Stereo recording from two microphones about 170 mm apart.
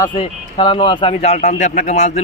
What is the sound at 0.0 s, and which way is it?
A man's voice, 30° left (ahead or behind).